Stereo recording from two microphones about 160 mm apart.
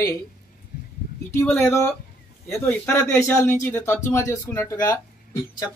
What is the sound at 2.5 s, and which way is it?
Speech, 15° left (ahead or behind).